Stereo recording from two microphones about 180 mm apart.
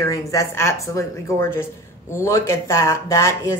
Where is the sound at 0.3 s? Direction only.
15° left (ahead or behind).